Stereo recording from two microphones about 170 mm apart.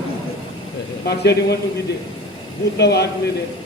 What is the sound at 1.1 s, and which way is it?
Speech, 75° left (ahead or behind).